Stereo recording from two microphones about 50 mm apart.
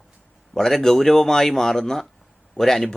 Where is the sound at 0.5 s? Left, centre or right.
Centre.